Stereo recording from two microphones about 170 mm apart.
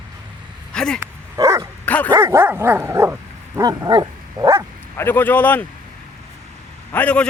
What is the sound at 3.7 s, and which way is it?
Dog, 25° right (ahead or behind).